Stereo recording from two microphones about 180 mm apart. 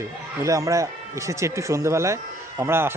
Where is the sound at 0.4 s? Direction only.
15° right (ahead or behind).